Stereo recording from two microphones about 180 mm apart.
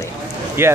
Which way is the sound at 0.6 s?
15° right (ahead or behind).